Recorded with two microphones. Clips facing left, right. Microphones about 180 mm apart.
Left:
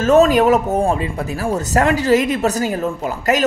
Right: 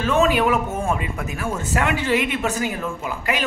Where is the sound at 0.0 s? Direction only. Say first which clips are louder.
Left 7 dB; 40° left (ahead or behind).